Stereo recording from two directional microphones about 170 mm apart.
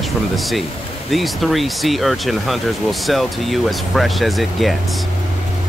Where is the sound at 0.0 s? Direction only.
Centre (ahead or behind).